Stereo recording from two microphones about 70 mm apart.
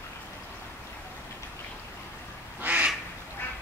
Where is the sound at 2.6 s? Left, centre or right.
Right.